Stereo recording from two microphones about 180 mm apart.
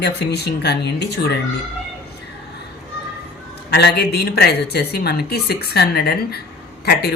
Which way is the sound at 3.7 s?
70° left (ahead or behind).